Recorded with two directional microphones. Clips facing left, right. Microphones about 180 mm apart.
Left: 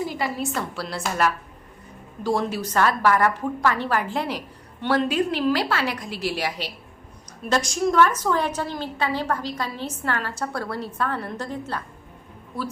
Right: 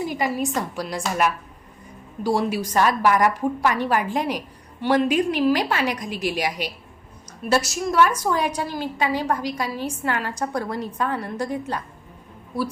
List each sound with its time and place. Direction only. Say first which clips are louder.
0.0 s a woman's voice: right 3 dB; 15° right (ahead or behind)